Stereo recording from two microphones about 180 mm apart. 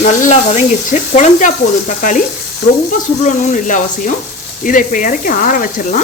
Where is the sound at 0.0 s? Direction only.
45° left (ahead or behind).